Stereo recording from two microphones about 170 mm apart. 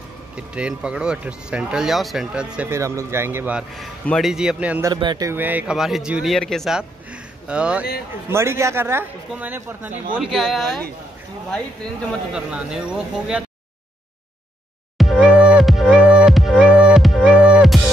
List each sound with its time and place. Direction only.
0.4 s speech: 5° right (ahead or behind)
3.7 s speech: 5° left (ahead or behind)
4.8 s speech: 25° right (ahead or behind)
5.3 s a man's voice: 10° right (ahead or behind)
12.4 s speech: 5° right (ahead or behind)
15.0 s music: 5° right (ahead or behind)